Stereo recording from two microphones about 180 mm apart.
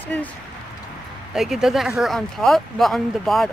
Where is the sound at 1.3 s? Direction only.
Centre (ahead or behind).